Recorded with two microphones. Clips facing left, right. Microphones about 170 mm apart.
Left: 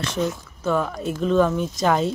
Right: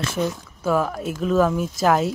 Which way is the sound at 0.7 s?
5° right (ahead or behind).